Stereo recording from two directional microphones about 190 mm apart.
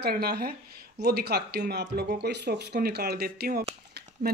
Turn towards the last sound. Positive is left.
turn(degrees=-60)  # may be behind; listen again after turning